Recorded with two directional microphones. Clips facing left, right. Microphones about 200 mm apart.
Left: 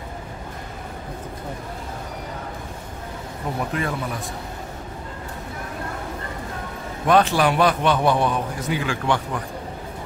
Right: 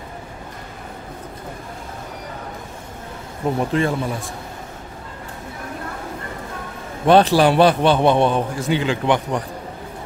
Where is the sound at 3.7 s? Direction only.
25° right (ahead or behind).